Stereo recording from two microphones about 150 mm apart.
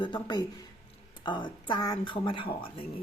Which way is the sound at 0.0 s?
30° left (ahead or behind).